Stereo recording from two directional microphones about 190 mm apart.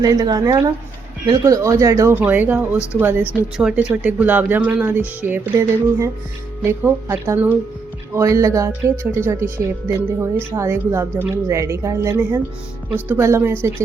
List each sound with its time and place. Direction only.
0.0 s speech: 20° right (ahead or behind)